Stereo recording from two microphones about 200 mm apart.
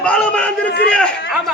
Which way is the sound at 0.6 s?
55° left (ahead or behind).